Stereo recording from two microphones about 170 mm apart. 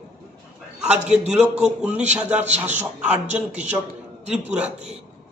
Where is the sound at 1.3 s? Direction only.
5° right (ahead or behind).